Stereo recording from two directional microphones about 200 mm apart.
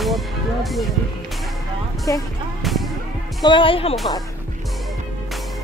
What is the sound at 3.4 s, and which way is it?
Speech, 25° left (ahead or behind).